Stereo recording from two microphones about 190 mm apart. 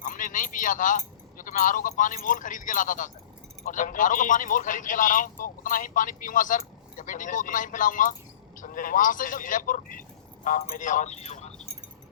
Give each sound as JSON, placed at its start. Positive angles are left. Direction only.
{"t": 0.0, "sound": "a man's voice", "side_deg": 45}